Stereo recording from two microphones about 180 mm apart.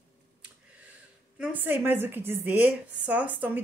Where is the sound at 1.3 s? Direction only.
10° right (ahead or behind).